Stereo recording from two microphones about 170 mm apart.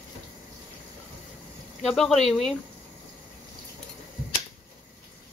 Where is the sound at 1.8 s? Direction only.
Centre (ahead or behind).